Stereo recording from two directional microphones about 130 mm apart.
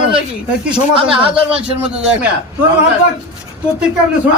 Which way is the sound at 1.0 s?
45° right (ahead or behind).